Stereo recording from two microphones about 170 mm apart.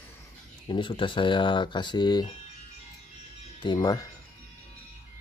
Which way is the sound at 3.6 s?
25° left (ahead or behind).